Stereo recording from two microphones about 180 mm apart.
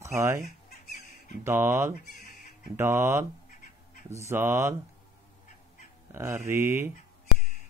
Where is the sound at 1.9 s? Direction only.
50° left (ahead or behind).